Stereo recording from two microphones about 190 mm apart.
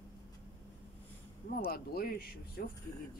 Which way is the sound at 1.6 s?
50° left (ahead or behind).